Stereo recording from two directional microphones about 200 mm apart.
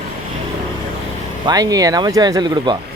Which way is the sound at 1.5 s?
20° right (ahead or behind).